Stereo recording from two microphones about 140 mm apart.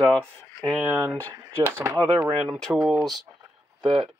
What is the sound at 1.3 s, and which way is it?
Speech, 20° right (ahead or behind).